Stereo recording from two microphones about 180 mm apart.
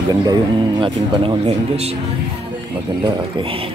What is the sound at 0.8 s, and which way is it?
Speech, 30° right (ahead or behind).